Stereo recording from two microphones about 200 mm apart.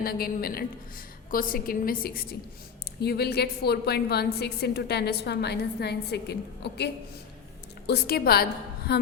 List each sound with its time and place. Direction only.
0.0 s a woman's voice: 50° left (ahead or behind)